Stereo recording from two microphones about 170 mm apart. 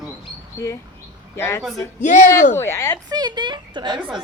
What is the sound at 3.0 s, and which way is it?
A woman's voice, 25° right (ahead or behind).